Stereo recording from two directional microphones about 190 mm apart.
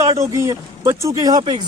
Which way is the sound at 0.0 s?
15° right (ahead or behind).